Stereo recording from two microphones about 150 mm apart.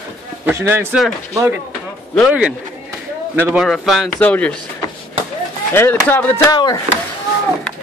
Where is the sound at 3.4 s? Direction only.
Centre (ahead or behind).